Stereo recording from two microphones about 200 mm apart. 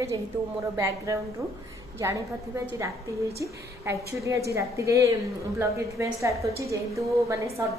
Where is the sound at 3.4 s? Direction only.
15° right (ahead or behind).